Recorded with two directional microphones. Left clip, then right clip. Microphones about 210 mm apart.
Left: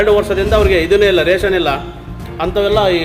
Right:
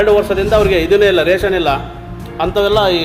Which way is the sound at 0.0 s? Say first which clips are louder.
Right 1 dB; centre (ahead or behind).